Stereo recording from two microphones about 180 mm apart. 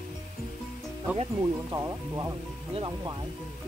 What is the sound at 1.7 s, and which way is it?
Speech, 15° right (ahead or behind).